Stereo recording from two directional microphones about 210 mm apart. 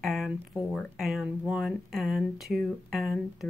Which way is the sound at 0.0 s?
Centre (ahead or behind).